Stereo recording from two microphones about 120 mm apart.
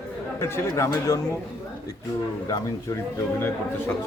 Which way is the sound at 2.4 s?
25° left (ahead or behind).